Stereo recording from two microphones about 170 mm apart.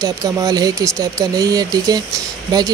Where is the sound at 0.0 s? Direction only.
20° right (ahead or behind).